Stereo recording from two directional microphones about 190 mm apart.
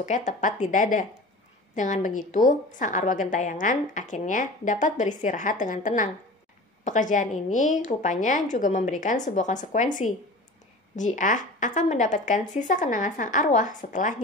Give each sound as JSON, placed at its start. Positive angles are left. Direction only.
{"t": 0.0, "sound": "a woman's voice", "side_deg": 40}